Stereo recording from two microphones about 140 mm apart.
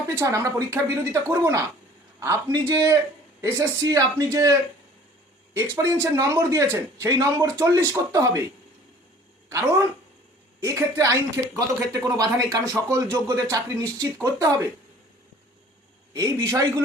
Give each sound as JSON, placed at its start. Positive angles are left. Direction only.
{"t": 0.1, "sound": "speech", "side_deg": -20}
{"t": 5.5, "sound": "speech", "side_deg": -20}
{"t": 9.5, "sound": "speech", "side_deg": -25}
{"t": 16.1, "sound": "speech", "side_deg": -20}